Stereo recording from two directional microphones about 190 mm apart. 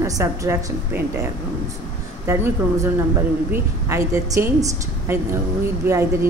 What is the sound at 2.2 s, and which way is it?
A woman's voice, 15° right (ahead or behind).